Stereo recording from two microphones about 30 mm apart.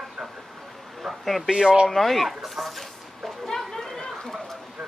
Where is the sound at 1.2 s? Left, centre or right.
Centre.